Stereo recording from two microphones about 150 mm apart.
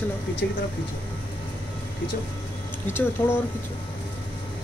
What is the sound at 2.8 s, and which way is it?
Speech, 15° left (ahead or behind).